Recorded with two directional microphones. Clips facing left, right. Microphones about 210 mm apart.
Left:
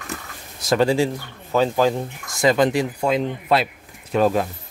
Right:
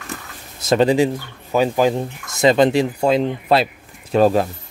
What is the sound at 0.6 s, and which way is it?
Speech, 20° right (ahead or behind).